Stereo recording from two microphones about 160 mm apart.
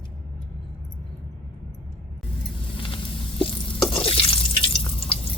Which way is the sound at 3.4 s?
35° left (ahead or behind).